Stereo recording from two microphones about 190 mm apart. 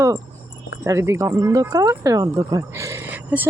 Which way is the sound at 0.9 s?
15° right (ahead or behind).